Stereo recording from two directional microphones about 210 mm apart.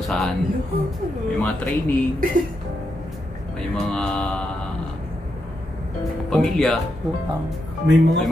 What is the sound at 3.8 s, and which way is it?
Speech, 5° left (ahead or behind).